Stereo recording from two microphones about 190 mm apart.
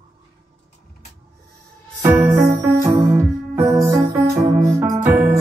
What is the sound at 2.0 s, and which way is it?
Music, 10° right (ahead or behind).